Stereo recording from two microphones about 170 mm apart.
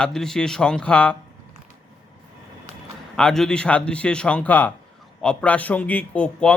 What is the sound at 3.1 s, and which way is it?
A man's voice, 5° left (ahead or behind).